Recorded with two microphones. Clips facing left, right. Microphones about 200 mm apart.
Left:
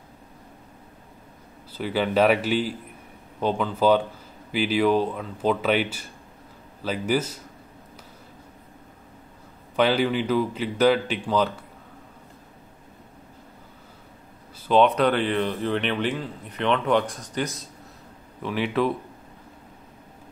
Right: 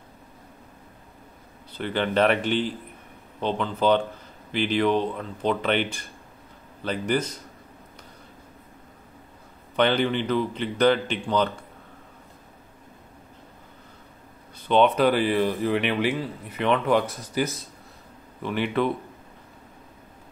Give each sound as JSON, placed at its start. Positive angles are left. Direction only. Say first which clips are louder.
{"t": 1.7, "sound": "speech", "louder": "left 1 dB", "side_deg": 5}
{"t": 9.8, "sound": "speech", "louder": "left 1 dB", "side_deg": 5}
{"t": 14.7, "sound": "speech", "louder": "even", "side_deg": 0}